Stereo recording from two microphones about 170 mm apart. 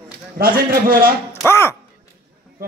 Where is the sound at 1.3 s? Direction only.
15° left (ahead or behind).